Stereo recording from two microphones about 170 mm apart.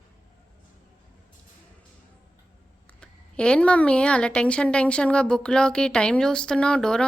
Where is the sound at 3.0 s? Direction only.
5° left (ahead or behind).